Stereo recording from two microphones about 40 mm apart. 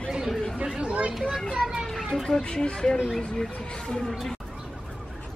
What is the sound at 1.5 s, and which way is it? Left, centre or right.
Children playing, centre.